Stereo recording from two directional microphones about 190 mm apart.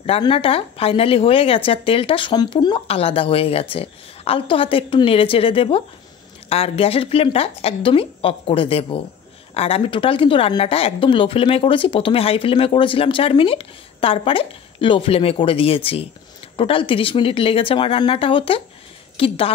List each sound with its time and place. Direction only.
0.0 s a woman's voice: 30° left (ahead or behind)